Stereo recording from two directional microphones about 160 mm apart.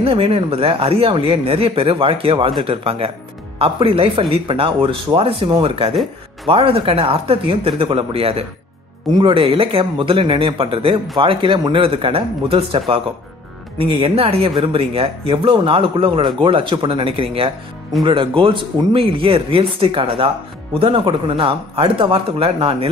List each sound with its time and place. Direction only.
0.0 s speech: 35° right (ahead or behind)